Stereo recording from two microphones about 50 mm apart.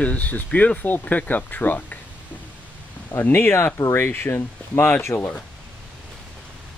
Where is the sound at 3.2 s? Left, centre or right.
Left.